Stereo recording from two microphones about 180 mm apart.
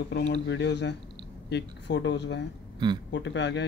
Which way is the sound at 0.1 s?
80° left.